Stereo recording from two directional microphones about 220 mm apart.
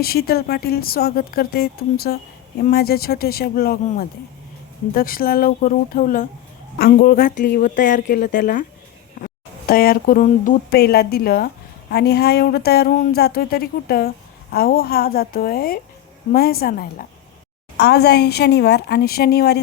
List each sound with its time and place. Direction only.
0.0 s speech: 45° left (ahead or behind)
4.9 s speech: 40° left (ahead or behind)